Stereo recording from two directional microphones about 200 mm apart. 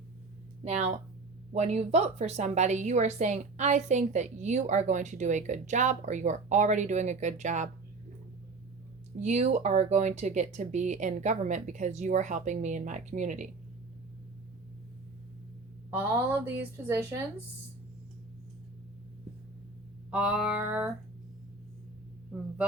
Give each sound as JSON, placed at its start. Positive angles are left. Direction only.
{"t": 0.6, "sound": "a woman's voice", "side_deg": -35}
{"t": 9.2, "sound": "a woman's voice", "side_deg": -35}
{"t": 15.9, "sound": "a woman's voice", "side_deg": -10}
{"t": 20.1, "sound": "a sound", "side_deg": -5}